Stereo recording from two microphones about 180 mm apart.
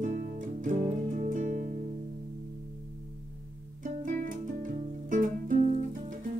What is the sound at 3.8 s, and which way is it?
Music, 45° right (ahead or behind).